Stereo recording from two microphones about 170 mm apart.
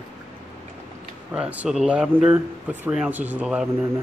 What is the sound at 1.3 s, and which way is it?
Speech, 5° right (ahead or behind).